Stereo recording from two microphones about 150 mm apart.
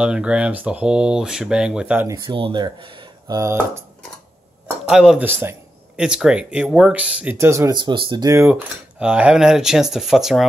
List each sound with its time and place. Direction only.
0.0 s speech: 5° right (ahead or behind)
2.0 s speech: 30° right (ahead or behind)
4.8 s speech: 5° right (ahead or behind)
7.7 s speech: 30° right (ahead or behind)
8.3 s speech: 15° right (ahead or behind)
9.0 s speech: 5° right (ahead or behind)